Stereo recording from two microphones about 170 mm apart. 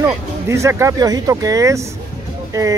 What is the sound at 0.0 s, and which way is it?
Speech, 15° right (ahead or behind).